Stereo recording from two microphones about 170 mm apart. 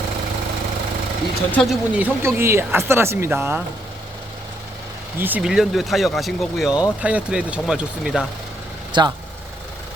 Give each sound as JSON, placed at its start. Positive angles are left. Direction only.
{"t": 1.5, "sound": "speech", "side_deg": 10}
{"t": 1.9, "sound": "speech", "side_deg": -10}
{"t": 5.2, "sound": "speech", "side_deg": -5}
{"t": 8.9, "sound": "speech", "side_deg": -25}